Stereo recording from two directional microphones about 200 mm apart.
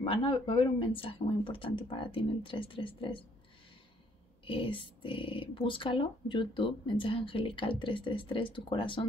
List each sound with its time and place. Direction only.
0.0 s speech: 30° left (ahead or behind)
4.5 s speech: 25° left (ahead or behind)